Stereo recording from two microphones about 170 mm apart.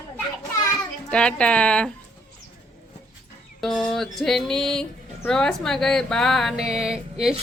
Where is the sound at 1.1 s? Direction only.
5° left (ahead or behind).